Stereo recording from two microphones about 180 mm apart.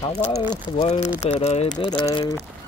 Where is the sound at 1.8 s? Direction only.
25° left (ahead or behind).